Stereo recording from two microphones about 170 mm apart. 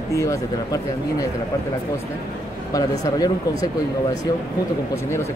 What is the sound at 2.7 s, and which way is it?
Speech, 20° left (ahead or behind).